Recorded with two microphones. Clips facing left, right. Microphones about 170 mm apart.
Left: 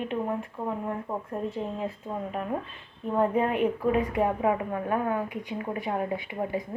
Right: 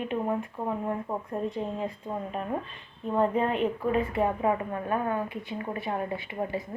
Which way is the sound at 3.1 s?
10° left (ahead or behind).